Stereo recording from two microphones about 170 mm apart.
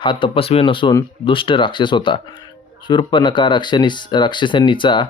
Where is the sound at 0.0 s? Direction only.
30° left (ahead or behind).